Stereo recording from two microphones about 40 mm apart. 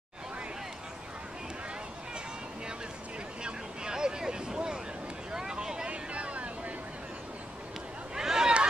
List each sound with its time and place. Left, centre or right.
3.4 s vehicle: centre
5.9 s vehicle: right
8.1 s a sound: centre